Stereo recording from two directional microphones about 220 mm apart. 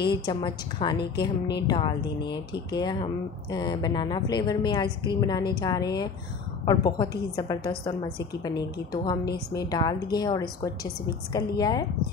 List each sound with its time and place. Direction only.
0.0 s a woman's voice: 20° left (ahead or behind)